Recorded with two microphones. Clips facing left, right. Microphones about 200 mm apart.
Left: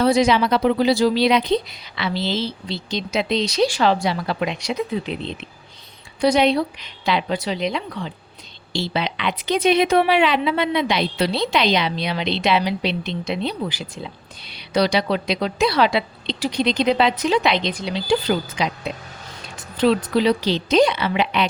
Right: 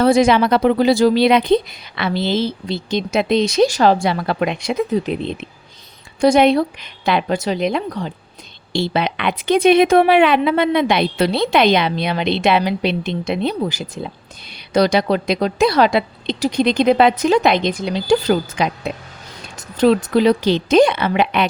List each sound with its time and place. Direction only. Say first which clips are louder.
0.0 s speech: right 4 dB; 50° right (ahead or behind)